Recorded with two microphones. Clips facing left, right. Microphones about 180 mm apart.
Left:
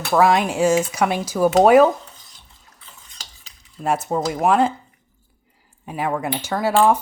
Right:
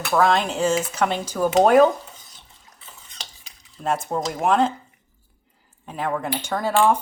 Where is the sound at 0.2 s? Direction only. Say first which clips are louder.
Left 3 dB; 10° left (ahead or behind).